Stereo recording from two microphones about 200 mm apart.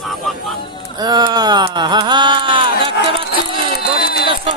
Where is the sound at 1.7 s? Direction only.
20° right (ahead or behind).